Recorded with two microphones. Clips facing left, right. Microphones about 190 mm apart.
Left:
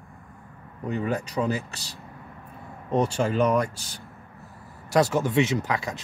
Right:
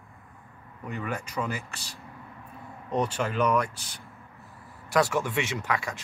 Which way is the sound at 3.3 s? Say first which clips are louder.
Left 2 dB; 40° left (ahead or behind).